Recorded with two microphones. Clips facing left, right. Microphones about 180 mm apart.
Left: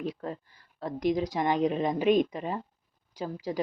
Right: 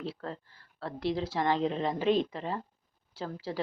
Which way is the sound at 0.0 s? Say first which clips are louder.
Left 4 dB; 15° left (ahead or behind).